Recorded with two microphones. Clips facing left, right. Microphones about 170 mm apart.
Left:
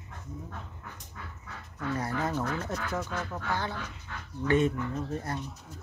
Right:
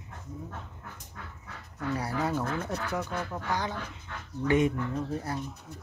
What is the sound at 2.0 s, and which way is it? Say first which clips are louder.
Speech: even; 10° right (ahead or behind).